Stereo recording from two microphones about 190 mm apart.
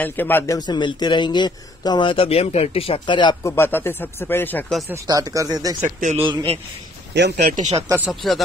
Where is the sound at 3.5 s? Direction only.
10° left (ahead or behind).